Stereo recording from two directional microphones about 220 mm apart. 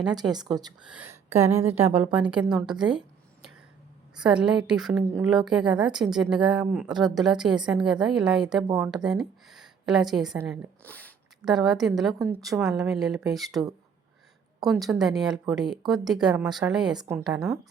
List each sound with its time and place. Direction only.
0.1 s speech: 20° right (ahead or behind)
0.9 s a woman's voice: 5° right (ahead or behind)
4.2 s a woman's voice: 5° right (ahead or behind)
8.6 s a woman's voice: 15° right (ahead or behind)
9.0 s a woman's voice: centre (ahead or behind)